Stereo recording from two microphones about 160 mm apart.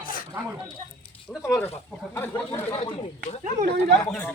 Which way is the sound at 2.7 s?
40° left (ahead or behind).